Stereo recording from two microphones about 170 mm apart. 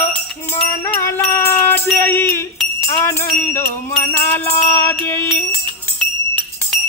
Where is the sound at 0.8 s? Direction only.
15° left (ahead or behind).